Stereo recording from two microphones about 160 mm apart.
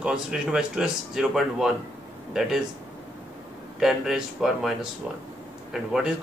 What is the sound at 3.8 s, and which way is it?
A man's voice, centre (ahead or behind).